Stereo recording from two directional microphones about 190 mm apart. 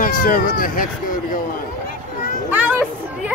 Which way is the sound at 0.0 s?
45° left (ahead or behind).